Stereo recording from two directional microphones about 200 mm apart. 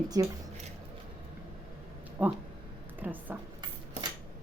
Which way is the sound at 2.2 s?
10° right (ahead or behind).